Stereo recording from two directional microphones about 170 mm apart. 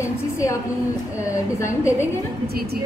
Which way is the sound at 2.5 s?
65° right (ahead or behind).